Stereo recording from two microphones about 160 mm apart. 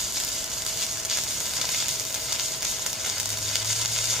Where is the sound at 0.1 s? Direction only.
Centre (ahead or behind).